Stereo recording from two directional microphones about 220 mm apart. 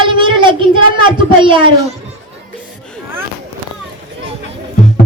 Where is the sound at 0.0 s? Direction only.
20° right (ahead or behind).